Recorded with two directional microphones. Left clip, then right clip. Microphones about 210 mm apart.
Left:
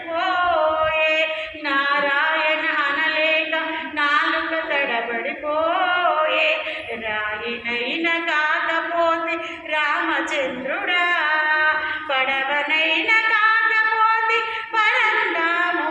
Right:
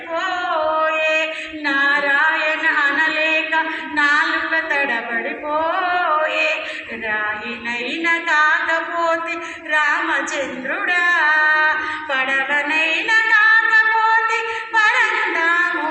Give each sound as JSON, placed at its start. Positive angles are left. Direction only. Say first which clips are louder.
{"t": 1.6, "sound": "singing", "louder": "right 3 dB", "side_deg": -15}
{"t": 2.8, "sound": "chant", "louder": "right 3 dB", "side_deg": -15}
{"t": 6.2, "sound": "mantra", "louder": "even", "side_deg": -15}
{"t": 8.0, "sound": "singing", "louder": "right 6 dB", "side_deg": -20}
{"t": 9.7, "sound": "a capella", "louder": "right 3 dB", "side_deg": -15}
{"t": 10.8, "sound": "music", "louder": "right 4 dB", "side_deg": -15}
{"t": 12.1, "sound": "singing", "louder": "right 2 dB", "side_deg": -15}